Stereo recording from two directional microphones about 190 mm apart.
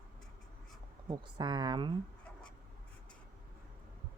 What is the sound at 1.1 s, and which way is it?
Speech, 20° right (ahead or behind).